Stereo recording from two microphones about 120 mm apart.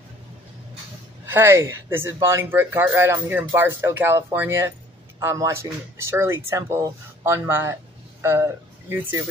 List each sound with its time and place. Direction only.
1.2 s speech: 20° right (ahead or behind)